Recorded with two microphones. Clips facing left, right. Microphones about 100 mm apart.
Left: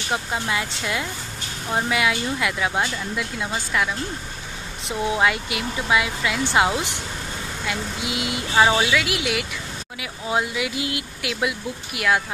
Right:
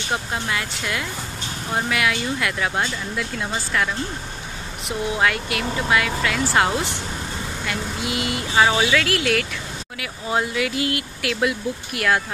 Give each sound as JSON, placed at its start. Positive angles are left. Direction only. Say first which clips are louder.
{"t": 0.3, "sound": "speech", "louder": "left 1 dB", "side_deg": 20}